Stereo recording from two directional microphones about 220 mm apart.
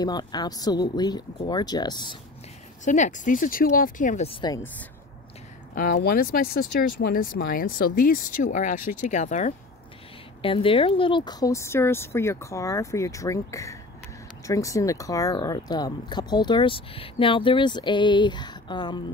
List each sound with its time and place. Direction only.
0.0 s speech: 20° left (ahead or behind)
2.8 s speech: 35° left (ahead or behind)
5.9 s speech: 45° left (ahead or behind); by 19.0 s 20° left (ahead or behind)